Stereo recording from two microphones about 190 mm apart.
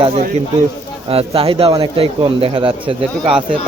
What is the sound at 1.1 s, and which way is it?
Speech, 30° right (ahead or behind).